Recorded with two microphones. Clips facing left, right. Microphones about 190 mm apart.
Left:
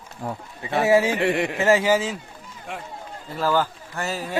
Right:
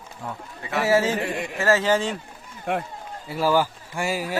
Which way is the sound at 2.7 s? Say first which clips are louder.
Right 9 dB; 60° right (ahead or behind).